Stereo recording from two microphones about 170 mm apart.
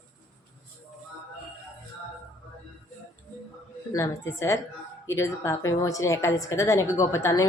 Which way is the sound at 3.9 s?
15° left (ahead or behind).